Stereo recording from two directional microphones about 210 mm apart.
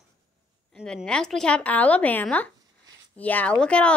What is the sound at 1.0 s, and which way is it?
A child's voice, 5° left (ahead or behind).